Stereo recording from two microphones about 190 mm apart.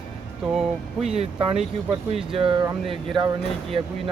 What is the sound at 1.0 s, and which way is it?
Speech, 35° right (ahead or behind).